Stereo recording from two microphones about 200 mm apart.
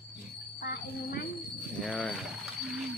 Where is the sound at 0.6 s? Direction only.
50° left (ahead or behind).